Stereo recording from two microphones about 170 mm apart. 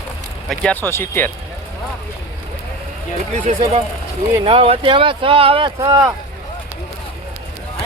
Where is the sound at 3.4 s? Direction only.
40° right (ahead or behind); by 6.1 s 25° right (ahead or behind).